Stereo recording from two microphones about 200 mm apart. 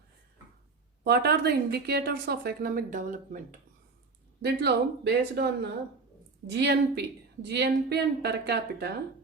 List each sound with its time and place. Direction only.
1.0 s a woman's voice: 55° right (ahead or behind)
4.4 s speech: 55° right (ahead or behind)
6.5 s speech: 55° right (ahead or behind)